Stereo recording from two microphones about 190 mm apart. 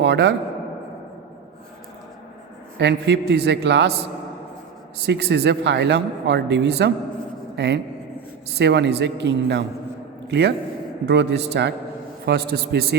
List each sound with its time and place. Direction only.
0.0 s a man's voice: 70° right (ahead or behind)
2.7 s speech: 65° right (ahead or behind)
5.0 s a man's voice: 65° right (ahead or behind)